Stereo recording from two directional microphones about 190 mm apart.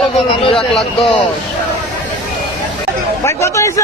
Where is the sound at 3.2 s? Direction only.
15° left (ahead or behind).